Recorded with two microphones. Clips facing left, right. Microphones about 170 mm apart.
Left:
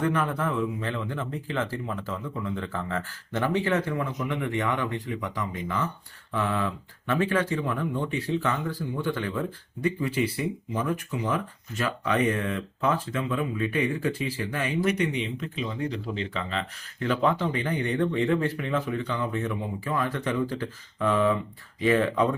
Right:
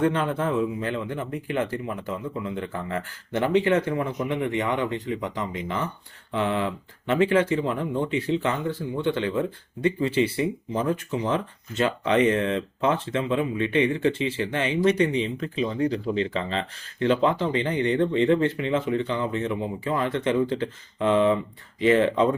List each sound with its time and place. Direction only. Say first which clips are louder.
0.0 s speech: right 3 dB; 30° right (ahead or behind)